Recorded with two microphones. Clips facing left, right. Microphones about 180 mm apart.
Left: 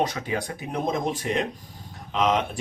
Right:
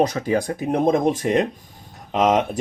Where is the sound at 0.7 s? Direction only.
55° right (ahead or behind).